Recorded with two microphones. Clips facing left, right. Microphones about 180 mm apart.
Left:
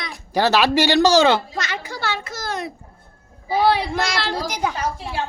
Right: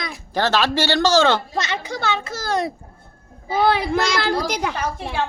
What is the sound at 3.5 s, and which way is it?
A woman's voice, 50° right (ahead or behind).